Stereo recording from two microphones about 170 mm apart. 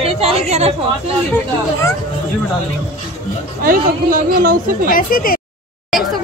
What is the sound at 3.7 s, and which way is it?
Speech, 60° right (ahead or behind).